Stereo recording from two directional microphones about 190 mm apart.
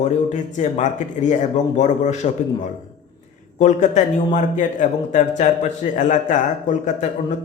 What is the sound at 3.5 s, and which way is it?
A man's voice, 40° left (ahead or behind).